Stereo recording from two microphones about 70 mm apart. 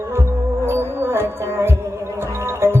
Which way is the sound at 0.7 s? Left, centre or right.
Right.